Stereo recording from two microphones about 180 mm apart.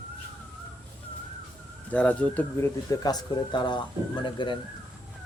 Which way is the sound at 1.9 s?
10° left (ahead or behind).